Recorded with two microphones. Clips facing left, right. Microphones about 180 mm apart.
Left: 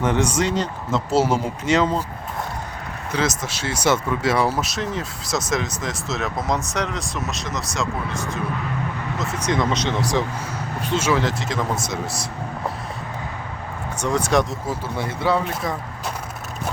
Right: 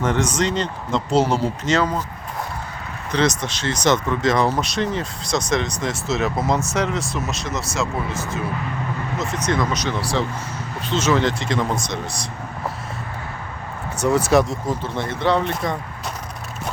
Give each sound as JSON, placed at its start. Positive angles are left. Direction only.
{"t": 0.0, "sound": "speech", "side_deg": 10}
{"t": 3.1, "sound": "speech", "side_deg": 5}
{"t": 9.5, "sound": "speech", "side_deg": 25}
{"t": 14.0, "sound": "speech", "side_deg": -5}
{"t": 14.7, "sound": "speech", "side_deg": 5}